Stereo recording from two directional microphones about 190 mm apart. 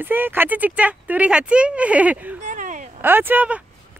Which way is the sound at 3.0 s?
10° right (ahead or behind).